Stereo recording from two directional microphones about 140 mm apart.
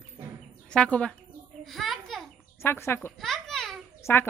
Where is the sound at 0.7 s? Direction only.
10° left (ahead or behind).